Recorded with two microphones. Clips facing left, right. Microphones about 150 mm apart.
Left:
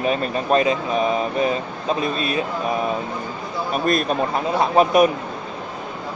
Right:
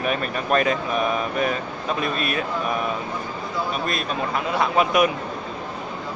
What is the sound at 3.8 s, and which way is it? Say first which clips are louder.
Speech: left 6 dB; 45° left (ahead or behind).